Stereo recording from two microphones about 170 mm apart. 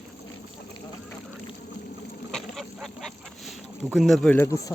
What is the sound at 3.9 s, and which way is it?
Speech, centre (ahead or behind).